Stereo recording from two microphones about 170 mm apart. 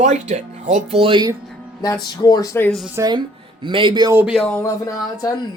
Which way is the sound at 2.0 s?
25° left (ahead or behind).